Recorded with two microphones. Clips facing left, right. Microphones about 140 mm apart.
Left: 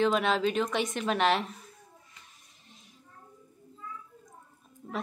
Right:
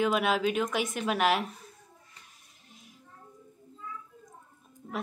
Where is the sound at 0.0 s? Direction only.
5° right (ahead or behind).